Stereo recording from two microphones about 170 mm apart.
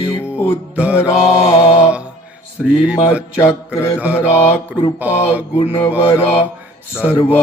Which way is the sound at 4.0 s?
10° right (ahead or behind).